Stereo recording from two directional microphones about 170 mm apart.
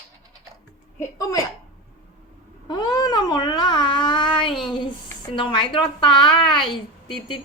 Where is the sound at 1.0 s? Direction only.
20° left (ahead or behind).